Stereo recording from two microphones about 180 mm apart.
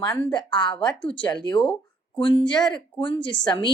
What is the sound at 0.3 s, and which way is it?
A woman's voice, 25° left (ahead or behind).